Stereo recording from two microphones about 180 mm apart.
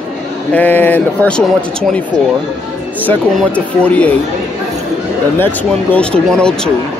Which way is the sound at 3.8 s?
5° left (ahead or behind).